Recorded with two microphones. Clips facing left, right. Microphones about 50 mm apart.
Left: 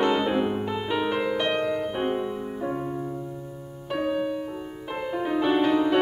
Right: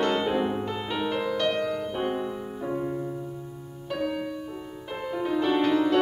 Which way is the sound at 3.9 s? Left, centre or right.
Left.